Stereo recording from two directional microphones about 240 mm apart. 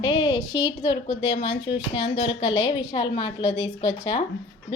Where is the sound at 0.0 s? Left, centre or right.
Centre.